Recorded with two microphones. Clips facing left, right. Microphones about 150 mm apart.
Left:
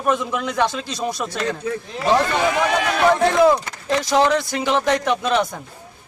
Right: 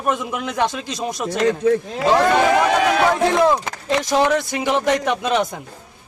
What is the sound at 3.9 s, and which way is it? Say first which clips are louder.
Speech: even; 20° right (ahead or behind).